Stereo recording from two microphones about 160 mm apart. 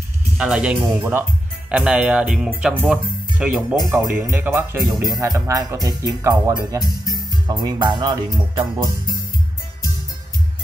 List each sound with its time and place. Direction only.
0.4 s speech: 5° right (ahead or behind)
3.8 s speech: 25° right (ahead or behind)